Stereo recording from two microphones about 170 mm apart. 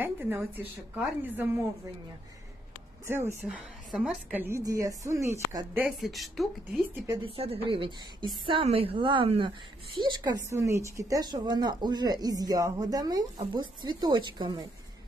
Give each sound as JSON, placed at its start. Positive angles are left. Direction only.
{"t": 0.0, "sound": "a woman's voice", "side_deg": -10}
{"t": 3.1, "sound": "a woman's voice", "side_deg": -15}
{"t": 5.8, "sound": "speech", "side_deg": 0}
{"t": 7.1, "sound": "a woman's voice", "side_deg": -30}